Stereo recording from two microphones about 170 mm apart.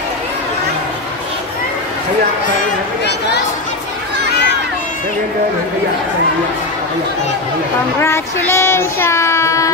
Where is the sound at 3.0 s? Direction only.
80° left.